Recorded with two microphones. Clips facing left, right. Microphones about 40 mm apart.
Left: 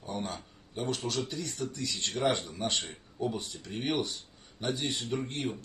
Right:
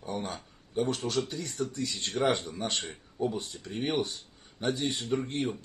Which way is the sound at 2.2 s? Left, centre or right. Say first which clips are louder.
Right 2 dB; right.